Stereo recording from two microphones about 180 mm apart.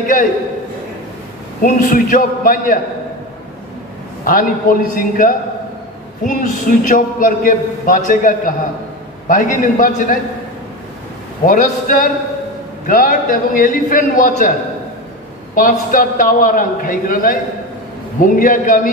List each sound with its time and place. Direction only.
1.6 s a man's voice: 50° left (ahead or behind)
4.2 s a man's voice: 50° left (ahead or behind)
11.4 s a man's voice: 50° left (ahead or behind)
15.5 s a man's voice: 50° left (ahead or behind)